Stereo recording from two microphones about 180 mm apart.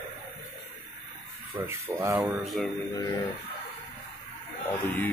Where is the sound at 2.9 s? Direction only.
20° left (ahead or behind).